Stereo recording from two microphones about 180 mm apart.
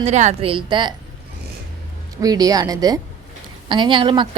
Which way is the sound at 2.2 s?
20° right (ahead or behind).